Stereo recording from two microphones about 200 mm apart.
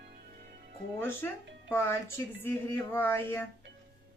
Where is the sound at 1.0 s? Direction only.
10° left (ahead or behind).